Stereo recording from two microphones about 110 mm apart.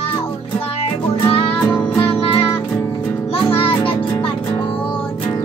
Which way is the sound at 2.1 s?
55° left (ahead or behind).